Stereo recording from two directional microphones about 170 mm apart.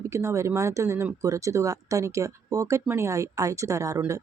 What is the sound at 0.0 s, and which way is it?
Speech, 15° right (ahead or behind).